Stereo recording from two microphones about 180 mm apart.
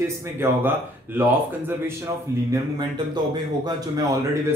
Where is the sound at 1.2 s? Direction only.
10° right (ahead or behind).